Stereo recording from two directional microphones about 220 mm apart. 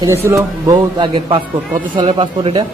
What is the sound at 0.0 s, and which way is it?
A man's voice, 10° right (ahead or behind).